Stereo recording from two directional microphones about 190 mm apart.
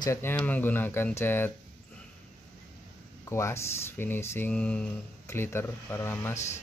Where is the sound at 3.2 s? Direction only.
15° left (ahead or behind).